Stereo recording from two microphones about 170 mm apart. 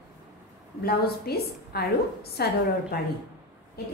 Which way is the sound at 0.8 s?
65° left (ahead or behind).